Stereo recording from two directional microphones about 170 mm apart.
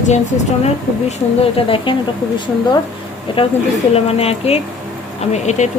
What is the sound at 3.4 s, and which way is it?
Speech, 35° left (ahead or behind).